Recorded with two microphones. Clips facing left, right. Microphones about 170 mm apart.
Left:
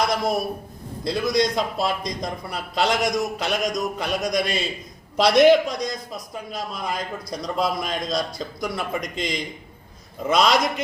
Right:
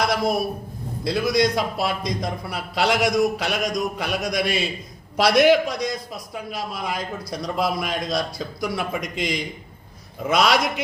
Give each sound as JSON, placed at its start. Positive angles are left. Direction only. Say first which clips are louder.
{"t": 1.0, "sound": "a man's voice", "louder": "right 1 dB", "side_deg": -5}